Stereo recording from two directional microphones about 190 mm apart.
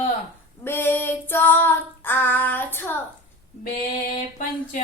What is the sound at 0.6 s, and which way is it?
Female singing, 10° left (ahead or behind).